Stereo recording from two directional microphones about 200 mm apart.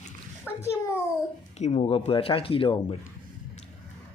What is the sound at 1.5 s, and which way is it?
Speech, 35° left (ahead or behind).